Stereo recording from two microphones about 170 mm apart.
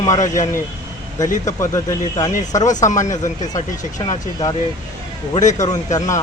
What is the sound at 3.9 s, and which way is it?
Speech, 25° left (ahead or behind).